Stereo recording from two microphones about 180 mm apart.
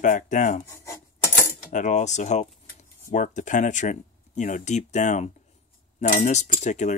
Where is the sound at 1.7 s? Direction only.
40° left (ahead or behind).